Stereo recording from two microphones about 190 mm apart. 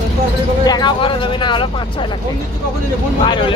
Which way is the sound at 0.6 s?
20° left (ahead or behind).